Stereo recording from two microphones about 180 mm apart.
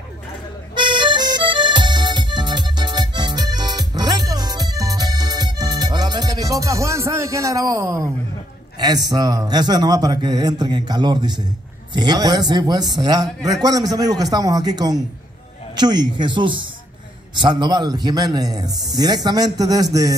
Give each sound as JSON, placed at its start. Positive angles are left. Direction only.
{"t": 0.7, "sound": "music", "side_deg": -25}
{"t": 8.7, "sound": "a man's voice", "side_deg": -20}